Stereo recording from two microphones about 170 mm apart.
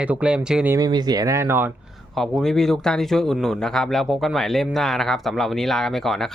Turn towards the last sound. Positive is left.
turn(degrees=0)  # may be behind; listen again after turning